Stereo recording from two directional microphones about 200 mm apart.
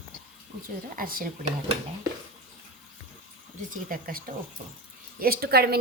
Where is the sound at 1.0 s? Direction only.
45° right (ahead or behind).